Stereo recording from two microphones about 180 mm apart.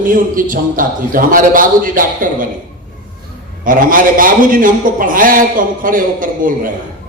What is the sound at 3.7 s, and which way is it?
A man's voice, 50° right (ahead or behind).